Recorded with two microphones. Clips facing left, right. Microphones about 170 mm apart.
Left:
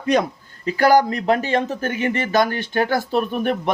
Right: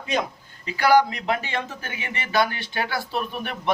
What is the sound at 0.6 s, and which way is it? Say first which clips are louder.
Speech: left 3 dB; 45° left (ahead or behind).